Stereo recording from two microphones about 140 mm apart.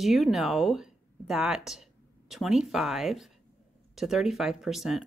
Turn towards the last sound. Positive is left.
turn(degrees=-5)  # may be behind; listen again after turning